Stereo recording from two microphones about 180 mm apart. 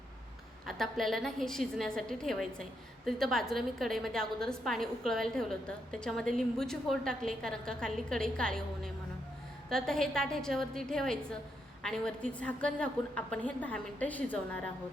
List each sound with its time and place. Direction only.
0.7 s a woman's voice: centre (ahead or behind)